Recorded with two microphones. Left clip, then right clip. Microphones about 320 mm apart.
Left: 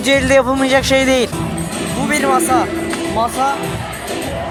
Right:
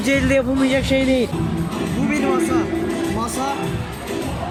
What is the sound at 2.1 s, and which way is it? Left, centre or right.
Speech, centre.